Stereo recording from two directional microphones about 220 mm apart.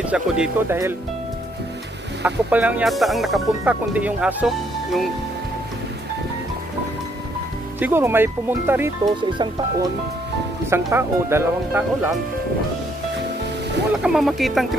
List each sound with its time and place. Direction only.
0.0 s speech: 5° right (ahead or behind)
2.2 s speech: 5° right (ahead or behind)
7.8 s speech: 10° right (ahead or behind)
14.0 s speech: centre (ahead or behind)